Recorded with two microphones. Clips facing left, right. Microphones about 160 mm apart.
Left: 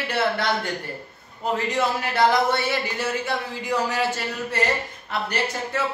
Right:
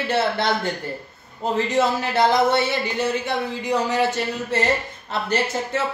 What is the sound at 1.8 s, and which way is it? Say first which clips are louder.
Speech: right 2 dB; 25° right (ahead or behind).